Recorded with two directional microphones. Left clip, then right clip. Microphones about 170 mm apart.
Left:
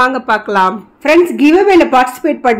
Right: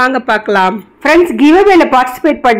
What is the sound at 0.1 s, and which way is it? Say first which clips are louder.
Speech: right 2 dB; 15° right (ahead or behind).